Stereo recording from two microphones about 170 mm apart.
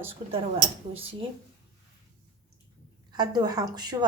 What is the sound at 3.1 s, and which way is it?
Speech, 25° right (ahead or behind).